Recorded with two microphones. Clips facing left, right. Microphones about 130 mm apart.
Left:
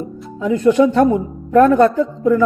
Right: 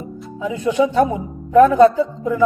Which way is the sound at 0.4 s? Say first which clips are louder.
Left 5 dB; 10° right (ahead or behind).